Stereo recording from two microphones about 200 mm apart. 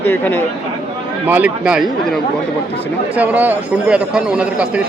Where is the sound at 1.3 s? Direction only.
5° right (ahead or behind).